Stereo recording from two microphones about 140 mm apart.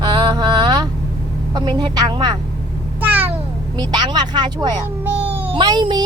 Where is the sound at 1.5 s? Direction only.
30° right (ahead or behind).